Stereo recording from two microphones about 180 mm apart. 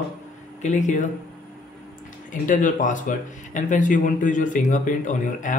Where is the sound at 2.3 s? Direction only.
45° left (ahead or behind).